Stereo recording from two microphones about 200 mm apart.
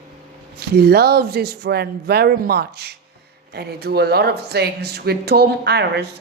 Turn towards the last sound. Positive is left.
turn(degrees=-55)  # may be behind; listen again after turning